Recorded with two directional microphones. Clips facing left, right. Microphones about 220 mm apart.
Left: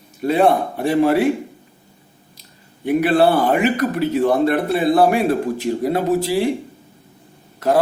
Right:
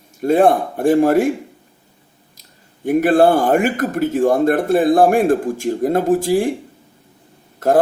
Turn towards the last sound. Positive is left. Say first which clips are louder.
# right 2 dB
turn(degrees=-50)  # may be behind; listen again after turning